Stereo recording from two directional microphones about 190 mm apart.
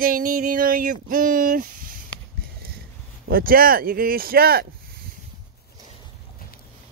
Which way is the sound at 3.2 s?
50° right (ahead or behind).